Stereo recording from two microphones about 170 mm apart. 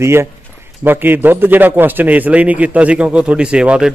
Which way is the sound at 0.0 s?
15° right (ahead or behind).